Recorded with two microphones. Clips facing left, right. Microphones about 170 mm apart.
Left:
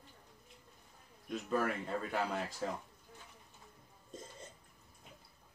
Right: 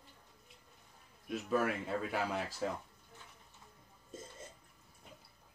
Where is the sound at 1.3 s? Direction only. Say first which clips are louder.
Right 1 dB; 5° right (ahead or behind).